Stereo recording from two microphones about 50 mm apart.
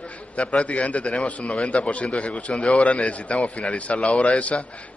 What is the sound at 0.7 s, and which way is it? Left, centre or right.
A man's voice, left.